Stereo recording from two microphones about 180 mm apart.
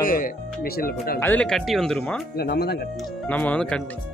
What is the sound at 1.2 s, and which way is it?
Speech, 10° left (ahead or behind).